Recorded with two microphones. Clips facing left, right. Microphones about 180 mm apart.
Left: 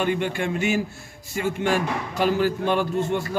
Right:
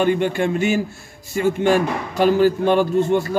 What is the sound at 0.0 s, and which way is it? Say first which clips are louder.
A man's voice: right 6 dB; 35° right (ahead or behind).